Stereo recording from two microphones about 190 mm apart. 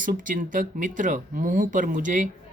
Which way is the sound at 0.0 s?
45° right (ahead or behind).